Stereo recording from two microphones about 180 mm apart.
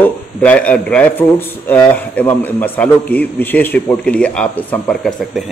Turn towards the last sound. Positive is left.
turn(degrees=5)  # may be behind; listen again after turning